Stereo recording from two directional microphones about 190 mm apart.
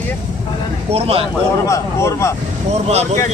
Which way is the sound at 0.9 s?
30° right (ahead or behind).